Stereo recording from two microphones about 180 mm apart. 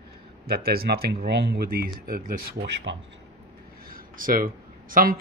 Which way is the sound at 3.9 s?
50° right (ahead or behind).